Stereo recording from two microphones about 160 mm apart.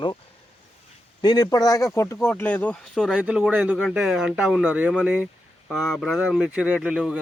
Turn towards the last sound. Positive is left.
turn(degrees=-5)  # may be behind; listen again after turning